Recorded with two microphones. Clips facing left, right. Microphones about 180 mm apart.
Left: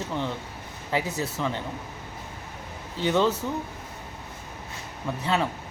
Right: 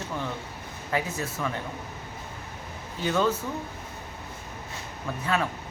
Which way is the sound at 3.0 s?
25° left (ahead or behind).